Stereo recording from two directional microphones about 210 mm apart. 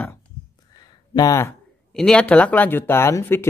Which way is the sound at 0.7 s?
20° left (ahead or behind).